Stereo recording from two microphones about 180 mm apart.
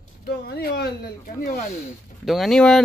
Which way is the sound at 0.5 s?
60° left (ahead or behind).